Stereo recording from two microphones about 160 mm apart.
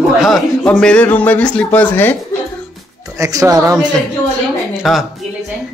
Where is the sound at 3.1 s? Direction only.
20° right (ahead or behind).